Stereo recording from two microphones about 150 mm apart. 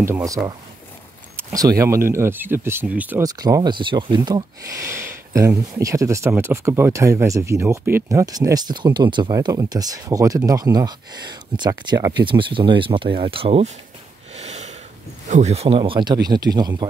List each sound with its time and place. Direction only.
0.0 s speech: 20° right (ahead or behind)
3.2 s speech: 25° right (ahead or behind)
14.3 s sniff: 50° right (ahead or behind)
15.2 s speech: 50° right (ahead or behind)
15.8 s speech: 30° right (ahead or behind)